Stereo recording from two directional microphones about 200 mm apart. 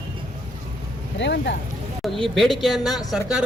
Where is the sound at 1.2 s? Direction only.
60° left (ahead or behind).